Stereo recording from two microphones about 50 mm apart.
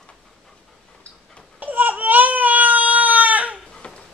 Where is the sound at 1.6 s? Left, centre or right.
Right.